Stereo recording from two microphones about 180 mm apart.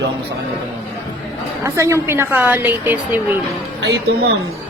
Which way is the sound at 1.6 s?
15° right (ahead or behind).